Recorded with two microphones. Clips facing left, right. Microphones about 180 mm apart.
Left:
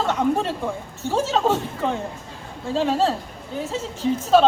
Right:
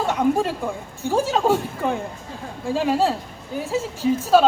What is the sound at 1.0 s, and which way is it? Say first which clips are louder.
A woman's voice: right 1 dB; 10° right (ahead or behind).